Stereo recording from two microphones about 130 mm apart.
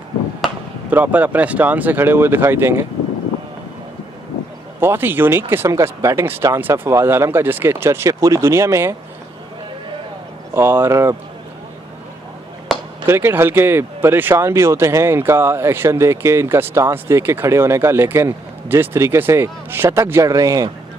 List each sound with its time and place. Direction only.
0.8 s speech: 10° right (ahead or behind)
4.7 s speech: 15° right (ahead or behind)
10.5 s speech: 15° right (ahead or behind)
12.7 s a sound: centre (ahead or behind)
13.0 s speech: 20° right (ahead or behind)